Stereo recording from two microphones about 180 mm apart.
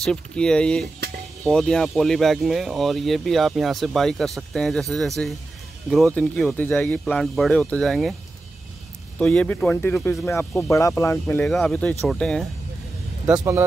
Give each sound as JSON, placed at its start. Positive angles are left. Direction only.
{"t": 0.0, "sound": "speech", "side_deg": 5}
{"t": 9.2, "sound": "speech", "side_deg": 5}
{"t": 13.4, "sound": "speech", "side_deg": -15}